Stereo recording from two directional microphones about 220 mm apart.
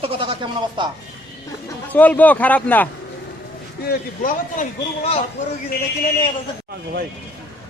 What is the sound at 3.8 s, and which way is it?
A man's voice, 40° left (ahead or behind).